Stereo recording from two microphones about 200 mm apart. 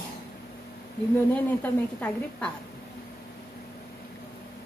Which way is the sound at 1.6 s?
10° left (ahead or behind).